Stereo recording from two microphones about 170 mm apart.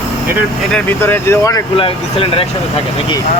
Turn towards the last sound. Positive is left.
turn(degrees=30)  # may be behind; listen again after turning